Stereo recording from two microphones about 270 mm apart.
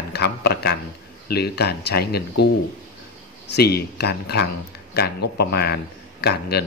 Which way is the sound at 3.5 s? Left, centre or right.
Left.